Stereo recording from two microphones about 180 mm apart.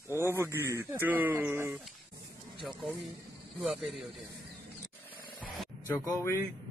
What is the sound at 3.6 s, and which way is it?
Speech, centre (ahead or behind).